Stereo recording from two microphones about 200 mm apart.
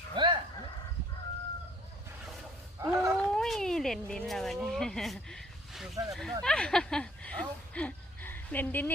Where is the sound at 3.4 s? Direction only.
Centre (ahead or behind).